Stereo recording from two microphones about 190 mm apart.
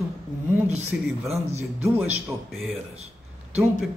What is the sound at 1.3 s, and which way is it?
Speech, 35° right (ahead or behind).